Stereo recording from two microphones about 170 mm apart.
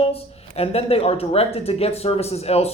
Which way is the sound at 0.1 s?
35° left (ahead or behind).